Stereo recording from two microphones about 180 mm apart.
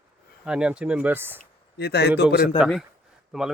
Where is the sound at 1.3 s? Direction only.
65° left (ahead or behind).